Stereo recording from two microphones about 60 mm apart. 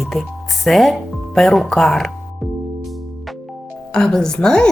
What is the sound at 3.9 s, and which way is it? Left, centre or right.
Speech, centre.